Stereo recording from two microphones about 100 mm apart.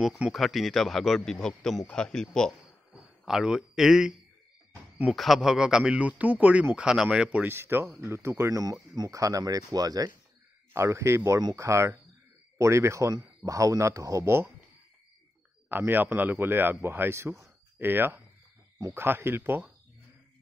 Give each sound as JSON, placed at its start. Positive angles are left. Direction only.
{"t": 0.3, "sound": "a man's voice", "side_deg": 0}
{"t": 2.9, "sound": "speech", "side_deg": -5}
{"t": 5.1, "sound": "a man's voice", "side_deg": 0}
{"t": 10.7, "sound": "speech", "side_deg": -25}
{"t": 15.7, "sound": "speech", "side_deg": -20}